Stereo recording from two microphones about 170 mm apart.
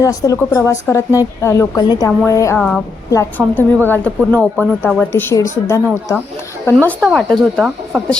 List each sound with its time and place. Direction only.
0.0 s a woman's voice: 20° left (ahead or behind)